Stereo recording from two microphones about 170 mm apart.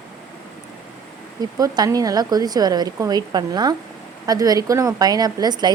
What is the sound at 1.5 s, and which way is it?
A woman's voice, 20° right (ahead or behind).